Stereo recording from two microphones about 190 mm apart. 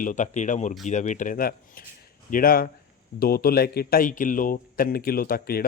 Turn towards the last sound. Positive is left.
turn(degrees=50)  # may be behind; listen again after turning